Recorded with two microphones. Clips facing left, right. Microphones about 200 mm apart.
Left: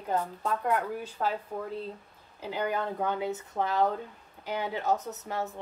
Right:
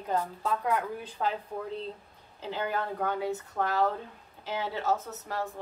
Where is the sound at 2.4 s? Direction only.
15° left (ahead or behind).